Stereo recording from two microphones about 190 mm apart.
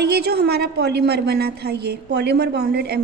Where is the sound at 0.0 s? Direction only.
60° right (ahead or behind).